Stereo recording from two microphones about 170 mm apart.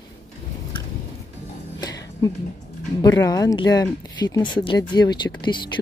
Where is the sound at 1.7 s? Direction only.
25° left (ahead or behind).